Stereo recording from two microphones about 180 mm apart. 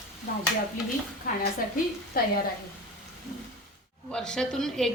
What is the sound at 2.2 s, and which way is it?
Speech, 55° left (ahead or behind).